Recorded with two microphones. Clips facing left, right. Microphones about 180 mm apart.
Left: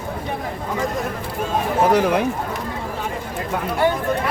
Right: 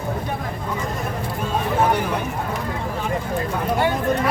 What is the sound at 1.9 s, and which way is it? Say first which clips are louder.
Speech: left 5 dB; 90° left.